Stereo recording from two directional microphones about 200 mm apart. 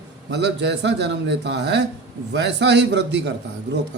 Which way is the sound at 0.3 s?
60° right (ahead or behind).